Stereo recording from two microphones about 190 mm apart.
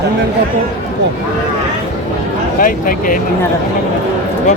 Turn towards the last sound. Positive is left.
turn(degrees=45)  # may be behind; listen again after turning